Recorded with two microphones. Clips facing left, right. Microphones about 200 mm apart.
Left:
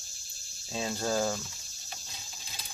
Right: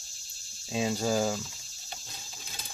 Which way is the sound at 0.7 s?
10° right (ahead or behind).